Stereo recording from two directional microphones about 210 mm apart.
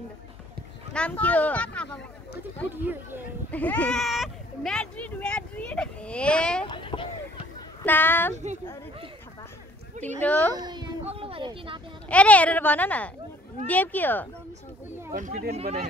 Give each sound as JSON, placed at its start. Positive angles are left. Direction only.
{"t": 0.9, "sound": "speech", "side_deg": 5}
{"t": 2.7, "sound": "speech", "side_deg": -10}
{"t": 3.5, "sound": "speech", "side_deg": 5}
{"t": 6.6, "sound": "speech", "side_deg": 25}
{"t": 7.8, "sound": "speech", "side_deg": 10}
{"t": 10.2, "sound": "speech", "side_deg": 5}
{"t": 10.5, "sound": "speech", "side_deg": -20}
{"t": 12.1, "sound": "speech", "side_deg": 5}
{"t": 15.1, "sound": "speech", "side_deg": -35}